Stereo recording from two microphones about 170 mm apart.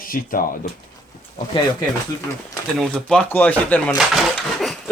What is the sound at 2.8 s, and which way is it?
Speech, 5° left (ahead or behind).